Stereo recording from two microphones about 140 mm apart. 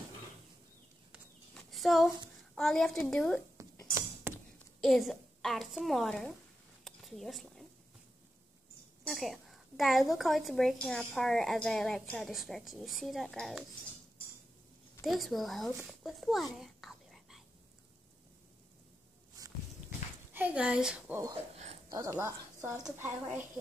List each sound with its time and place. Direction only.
1.5 s a sound: centre (ahead or behind)
2.5 s a child's voice: 5° left (ahead or behind)
4.7 s a woman's voice: centre (ahead or behind)
6.8 s a sound: centre (ahead or behind)
9.0 s a woman's voice: centre (ahead or behind)
15.0 s a woman's voice: centre (ahead or behind)
16.5 s whispering: centre (ahead or behind)
19.4 s walk: 25° right (ahead or behind)
20.3 s speech: 10° right (ahead or behind)
21.1 s speech: 25° right (ahead or behind)